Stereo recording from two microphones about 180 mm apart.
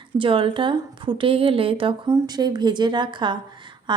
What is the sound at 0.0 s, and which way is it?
A woman's voice, 30° right (ahead or behind).